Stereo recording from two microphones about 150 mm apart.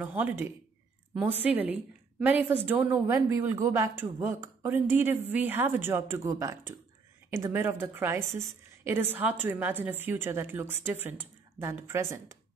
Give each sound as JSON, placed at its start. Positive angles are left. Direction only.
{"t": 0.0, "sound": "speech", "side_deg": -10}